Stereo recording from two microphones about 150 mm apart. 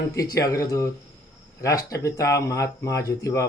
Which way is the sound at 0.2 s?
25° left (ahead or behind).